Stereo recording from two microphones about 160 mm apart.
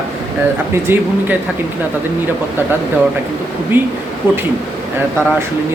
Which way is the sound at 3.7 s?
10° right (ahead or behind).